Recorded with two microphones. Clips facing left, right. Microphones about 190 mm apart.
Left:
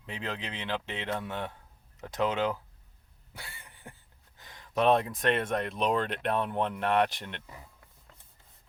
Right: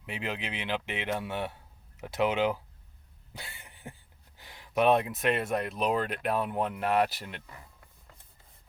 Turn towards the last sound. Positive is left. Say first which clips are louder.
# even
turn(degrees=-5)  # may be behind; listen again after turning